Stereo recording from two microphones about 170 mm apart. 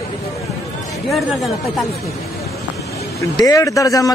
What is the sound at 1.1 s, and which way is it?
Speech, centre (ahead or behind).